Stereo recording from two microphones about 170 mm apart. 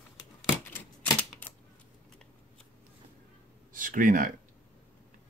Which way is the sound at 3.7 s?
50° right (ahead or behind).